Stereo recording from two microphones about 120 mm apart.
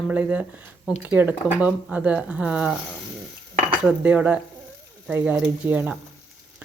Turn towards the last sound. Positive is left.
turn(degrees=-15)  # may be behind; listen again after turning